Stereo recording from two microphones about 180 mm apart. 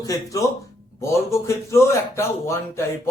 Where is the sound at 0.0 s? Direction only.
20° left (ahead or behind).